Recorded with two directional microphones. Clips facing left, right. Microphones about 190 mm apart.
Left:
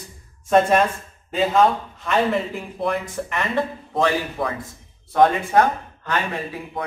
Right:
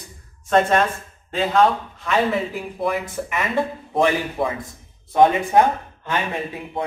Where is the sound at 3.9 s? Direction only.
20° right (ahead or behind).